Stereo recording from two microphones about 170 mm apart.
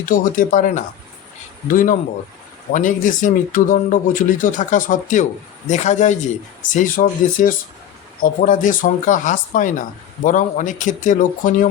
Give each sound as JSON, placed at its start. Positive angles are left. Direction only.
{"t": 0.0, "sound": "speech", "side_deg": 55}